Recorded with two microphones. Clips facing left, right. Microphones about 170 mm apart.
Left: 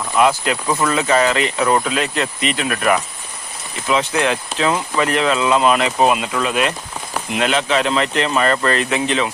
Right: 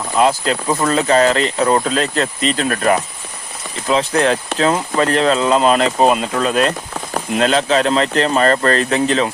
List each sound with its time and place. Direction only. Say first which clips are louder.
0.2 s speech: right 1 dB; 30° right (ahead or behind)